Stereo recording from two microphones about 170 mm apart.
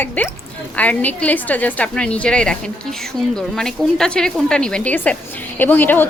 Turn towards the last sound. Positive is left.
turn(degrees=10)  # may be behind; listen again after turning